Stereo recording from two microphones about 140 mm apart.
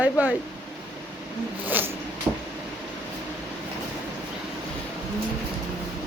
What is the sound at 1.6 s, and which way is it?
Zipper, 15° right (ahead or behind).